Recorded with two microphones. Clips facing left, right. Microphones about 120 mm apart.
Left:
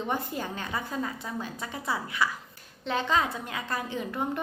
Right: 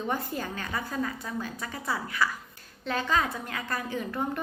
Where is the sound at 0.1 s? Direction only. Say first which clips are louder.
Even; 20° left (ahead or behind).